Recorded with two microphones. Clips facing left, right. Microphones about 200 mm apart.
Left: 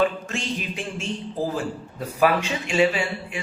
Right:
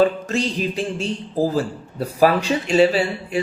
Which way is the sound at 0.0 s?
35° right (ahead or behind).